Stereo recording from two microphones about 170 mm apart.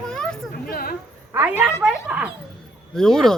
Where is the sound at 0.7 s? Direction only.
60° left (ahead or behind).